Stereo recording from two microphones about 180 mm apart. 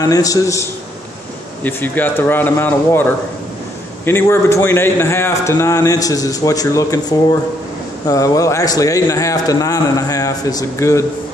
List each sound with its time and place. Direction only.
0.0 s a man's voice: 20° left (ahead or behind)